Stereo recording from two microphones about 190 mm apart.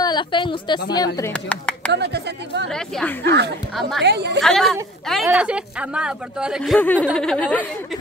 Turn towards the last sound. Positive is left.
turn(degrees=5)  # may be behind; listen again after turning